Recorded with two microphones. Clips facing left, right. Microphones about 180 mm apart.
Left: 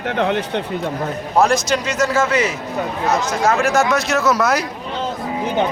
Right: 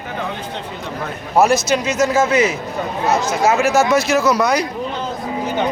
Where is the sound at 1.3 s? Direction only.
5° right (ahead or behind).